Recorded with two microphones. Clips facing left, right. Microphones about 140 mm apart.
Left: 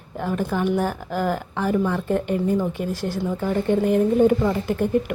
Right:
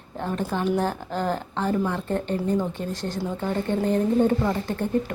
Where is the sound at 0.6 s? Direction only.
10° left (ahead or behind).